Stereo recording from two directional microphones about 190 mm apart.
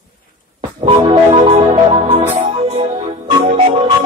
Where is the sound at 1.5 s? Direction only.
40° right (ahead or behind).